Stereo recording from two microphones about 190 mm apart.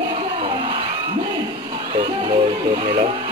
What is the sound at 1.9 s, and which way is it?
Music, 25° right (ahead or behind).